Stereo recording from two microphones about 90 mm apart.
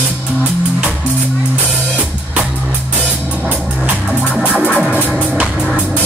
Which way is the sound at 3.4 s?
10° right (ahead or behind).